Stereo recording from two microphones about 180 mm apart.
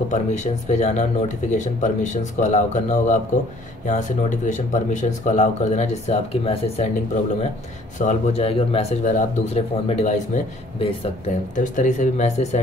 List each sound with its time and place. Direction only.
0.1 s speech: 40° left (ahead or behind)
8.0 s speech: 40° left (ahead or behind)